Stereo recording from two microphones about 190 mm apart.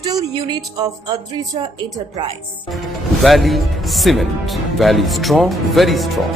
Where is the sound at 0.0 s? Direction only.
20° right (ahead or behind).